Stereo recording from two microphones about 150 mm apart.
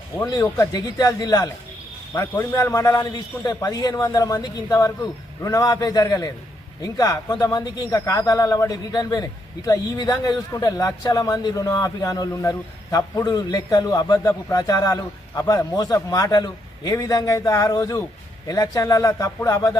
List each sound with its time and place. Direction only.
0.3 s a man's voice: 25° left (ahead or behind)